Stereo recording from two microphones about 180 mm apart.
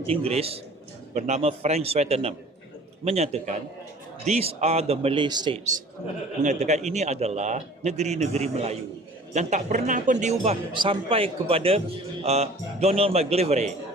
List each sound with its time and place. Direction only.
0.1 s a man's voice: 35° right (ahead or behind)
6.4 s a man's voice: 40° right (ahead or behind)